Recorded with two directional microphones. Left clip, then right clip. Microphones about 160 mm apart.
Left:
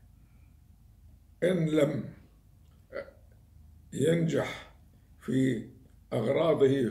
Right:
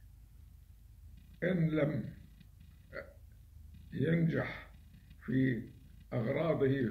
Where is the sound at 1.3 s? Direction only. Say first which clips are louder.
Left 7 dB; 10° left (ahead or behind).